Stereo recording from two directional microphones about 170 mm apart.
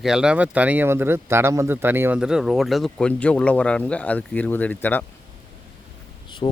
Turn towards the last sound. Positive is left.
turn(degrees=30)  # may be behind; listen again after turning